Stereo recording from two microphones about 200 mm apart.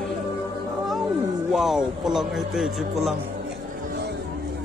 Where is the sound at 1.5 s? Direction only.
Centre (ahead or behind).